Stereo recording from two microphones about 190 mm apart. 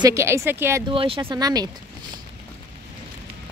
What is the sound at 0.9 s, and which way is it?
Speech, 30° right (ahead or behind).